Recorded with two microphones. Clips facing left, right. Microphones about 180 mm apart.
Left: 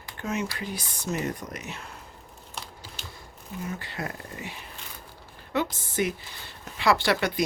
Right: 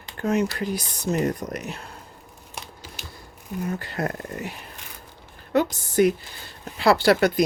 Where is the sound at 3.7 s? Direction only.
45° right (ahead or behind).